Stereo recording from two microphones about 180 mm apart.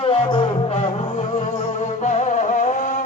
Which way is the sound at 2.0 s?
40° left (ahead or behind).